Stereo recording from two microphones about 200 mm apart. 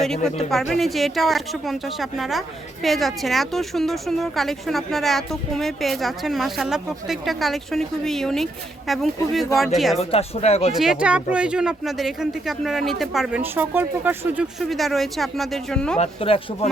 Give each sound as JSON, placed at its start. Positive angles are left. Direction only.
{"t": 0.3, "sound": "a woman's voice", "side_deg": 0}
{"t": 10.0, "sound": "speech", "side_deg": 30}
{"t": 10.7, "sound": "a woman's voice", "side_deg": 0}
{"t": 16.0, "sound": "speech", "side_deg": 30}